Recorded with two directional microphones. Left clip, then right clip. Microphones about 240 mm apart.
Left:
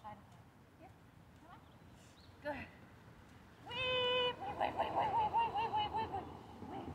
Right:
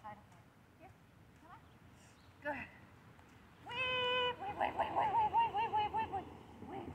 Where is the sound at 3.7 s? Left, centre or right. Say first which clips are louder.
Even; centre.